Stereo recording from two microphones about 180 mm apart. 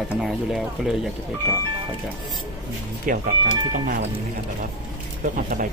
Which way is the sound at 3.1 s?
50° right (ahead or behind).